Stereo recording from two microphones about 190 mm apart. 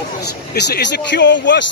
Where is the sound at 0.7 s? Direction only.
65° left (ahead or behind).